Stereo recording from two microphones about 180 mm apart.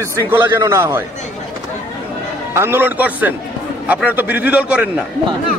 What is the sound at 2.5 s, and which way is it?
A man's voice, 15° right (ahead or behind).